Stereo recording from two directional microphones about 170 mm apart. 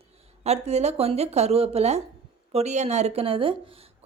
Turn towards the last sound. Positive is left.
turn(degrees=-35)  # may be behind; listen again after turning